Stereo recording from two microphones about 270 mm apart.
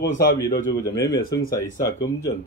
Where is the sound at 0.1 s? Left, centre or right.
Left.